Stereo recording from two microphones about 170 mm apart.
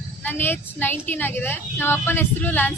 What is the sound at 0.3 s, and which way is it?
A woman's voice, 10° left (ahead or behind).